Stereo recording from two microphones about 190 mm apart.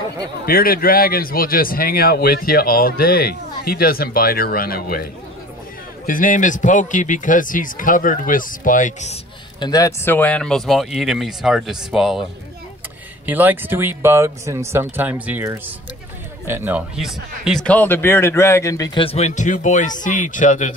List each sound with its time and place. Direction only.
0.5 s speech: 50° left (ahead or behind)
6.0 s speech: 45° left (ahead or behind)
9.6 s speech: 20° left (ahead or behind)
19.0 s speech: 35° left (ahead or behind)